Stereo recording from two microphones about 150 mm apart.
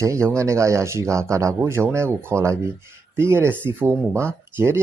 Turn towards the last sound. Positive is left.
turn(degrees=-15)  # may be behind; listen again after turning